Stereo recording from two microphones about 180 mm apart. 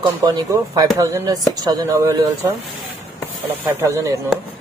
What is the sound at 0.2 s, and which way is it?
A man's voice, 20° right (ahead or behind).